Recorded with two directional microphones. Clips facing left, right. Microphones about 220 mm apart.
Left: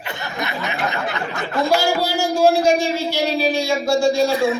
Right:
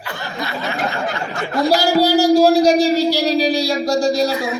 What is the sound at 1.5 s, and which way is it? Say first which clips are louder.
A man's voice: right 3 dB; 35° right (ahead or behind).